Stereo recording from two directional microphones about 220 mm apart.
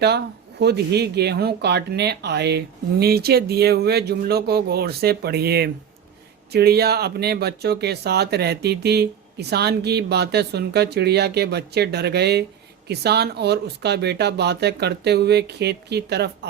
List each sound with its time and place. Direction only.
0.6 s speech: 50° right (ahead or behind)